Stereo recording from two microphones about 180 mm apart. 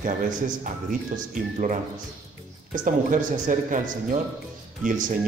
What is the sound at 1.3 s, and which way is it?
Speech, 45° right (ahead or behind).